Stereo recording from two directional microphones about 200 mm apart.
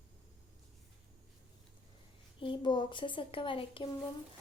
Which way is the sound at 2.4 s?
25° left (ahead or behind).